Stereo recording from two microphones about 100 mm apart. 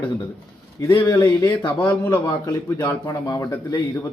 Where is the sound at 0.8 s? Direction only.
30° left (ahead or behind).